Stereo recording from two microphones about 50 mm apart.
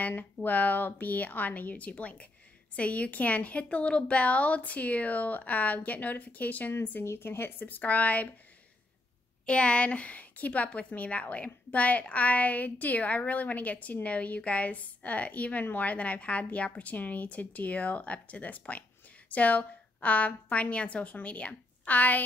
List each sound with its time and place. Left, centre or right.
0.2 s a woman's voice: left
7.1 s speech: left
7.6 s a woman's voice: left
9.5 s a woman's voice: left